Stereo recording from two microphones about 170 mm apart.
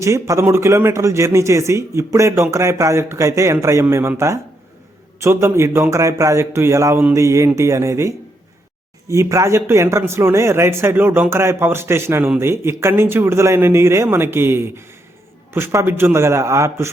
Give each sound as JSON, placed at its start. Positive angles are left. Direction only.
{"t": 0.0, "sound": "speech", "side_deg": -15}